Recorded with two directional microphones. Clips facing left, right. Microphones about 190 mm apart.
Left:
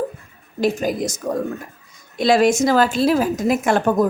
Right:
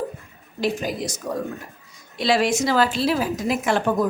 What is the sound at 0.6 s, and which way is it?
Speech, 45° left (ahead or behind).